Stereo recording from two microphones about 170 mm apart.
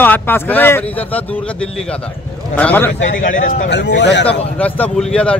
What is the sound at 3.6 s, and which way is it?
Speech, 90° left.